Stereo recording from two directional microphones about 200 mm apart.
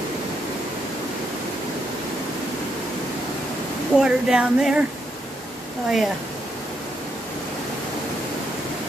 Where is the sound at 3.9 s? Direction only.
5° right (ahead or behind).